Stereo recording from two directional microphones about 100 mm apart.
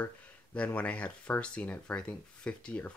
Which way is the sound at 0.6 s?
15° left (ahead or behind).